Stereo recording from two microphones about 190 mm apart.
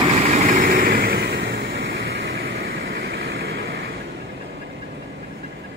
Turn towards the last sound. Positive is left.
turn(degrees=-55)  # may be behind; listen again after turning